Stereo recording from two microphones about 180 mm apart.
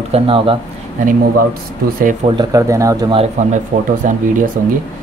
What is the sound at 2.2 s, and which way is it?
Speech, 20° right (ahead or behind).